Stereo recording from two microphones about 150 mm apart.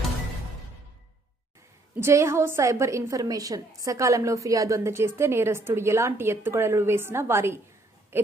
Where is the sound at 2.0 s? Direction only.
20° right (ahead or behind).